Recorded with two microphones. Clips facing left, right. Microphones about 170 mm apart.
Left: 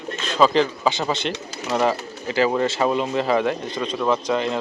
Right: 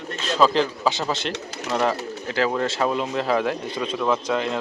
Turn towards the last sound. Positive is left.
turn(degrees=0)  # may be behind; listen again after turning